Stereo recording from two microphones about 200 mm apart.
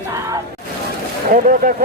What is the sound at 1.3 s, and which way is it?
Speech, 45° right (ahead or behind).